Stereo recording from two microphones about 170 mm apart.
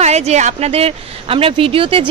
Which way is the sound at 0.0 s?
40° right (ahead or behind).